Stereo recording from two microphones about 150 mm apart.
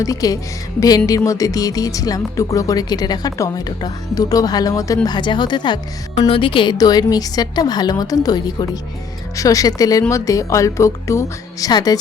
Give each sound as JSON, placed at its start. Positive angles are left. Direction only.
{"t": 0.0, "sound": "speech", "side_deg": 25}